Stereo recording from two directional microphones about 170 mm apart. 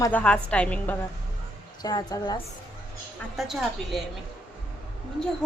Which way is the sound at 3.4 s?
Centre (ahead or behind).